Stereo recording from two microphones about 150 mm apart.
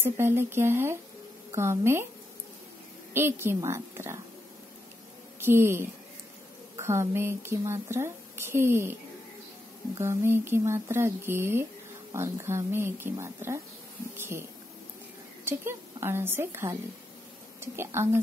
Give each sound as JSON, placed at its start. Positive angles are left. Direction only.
{"t": 0.0, "sound": "speech", "side_deg": -15}
{"t": 3.1, "sound": "speech", "side_deg": -15}
{"t": 5.4, "sound": "speech", "side_deg": -15}
{"t": 9.9, "sound": "speech", "side_deg": -15}
{"t": 15.4, "sound": "a woman's voice", "side_deg": -15}